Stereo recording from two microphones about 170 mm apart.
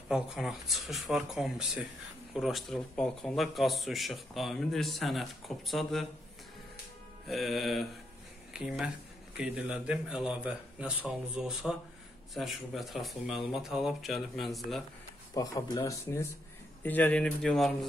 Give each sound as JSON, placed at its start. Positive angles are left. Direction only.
{"t": 0.1, "sound": "a man's voice", "side_deg": 0}
{"t": 7.2, "sound": "a man's voice", "side_deg": 0}
{"t": 15.3, "sound": "a man's voice", "side_deg": 20}